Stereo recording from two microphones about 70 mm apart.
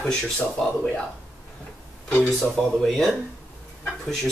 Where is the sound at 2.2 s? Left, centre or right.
Centre.